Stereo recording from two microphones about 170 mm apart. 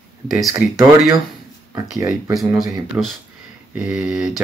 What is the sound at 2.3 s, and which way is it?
Speech, centre (ahead or behind).